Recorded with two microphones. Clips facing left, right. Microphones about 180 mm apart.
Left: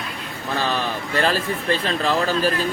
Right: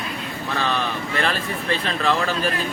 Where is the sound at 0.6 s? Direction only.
35° left (ahead or behind).